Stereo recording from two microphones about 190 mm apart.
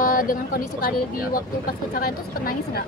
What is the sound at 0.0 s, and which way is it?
Speech, 50° left (ahead or behind).